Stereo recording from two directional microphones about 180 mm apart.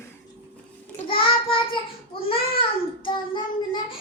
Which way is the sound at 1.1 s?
30° left (ahead or behind).